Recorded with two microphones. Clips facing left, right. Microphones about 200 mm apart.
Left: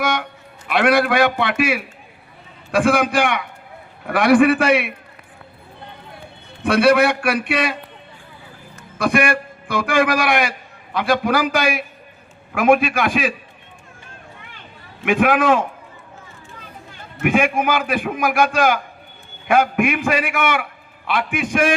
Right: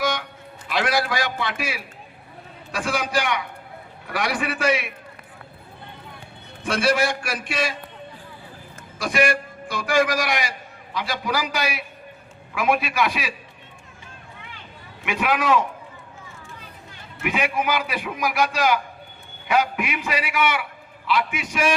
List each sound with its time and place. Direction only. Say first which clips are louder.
0.0 s a sound: left 3 dB; 55° left (ahead or behind)
0.7 s a man's voice: left 7 dB; 60° left (ahead or behind)
6.6 s a man's voice: left 7 dB; 60° left (ahead or behind)
9.0 s a man's voice: left 4 dB; 55° left (ahead or behind)
15.0 s a man's voice: left 7 dB; 50° left (ahead or behind)
17.2 s a man's voice: left 7 dB; 50° left (ahead or behind)